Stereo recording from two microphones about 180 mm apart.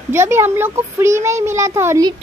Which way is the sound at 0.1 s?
15° right (ahead or behind).